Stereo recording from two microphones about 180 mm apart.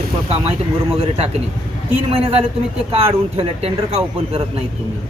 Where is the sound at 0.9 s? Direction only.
35° right (ahead or behind).